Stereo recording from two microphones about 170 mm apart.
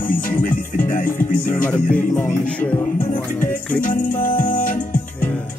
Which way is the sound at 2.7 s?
30° left (ahead or behind).